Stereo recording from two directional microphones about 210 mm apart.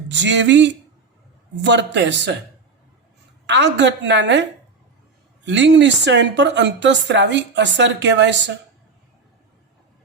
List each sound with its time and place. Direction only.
0.1 s a woman's voice: 60° right (ahead or behind)
3.4 s a woman's voice: 55° right (ahead or behind)
5.5 s a woman's voice: 55° right (ahead or behind)